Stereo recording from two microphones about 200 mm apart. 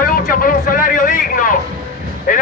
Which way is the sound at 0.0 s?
45° left (ahead or behind).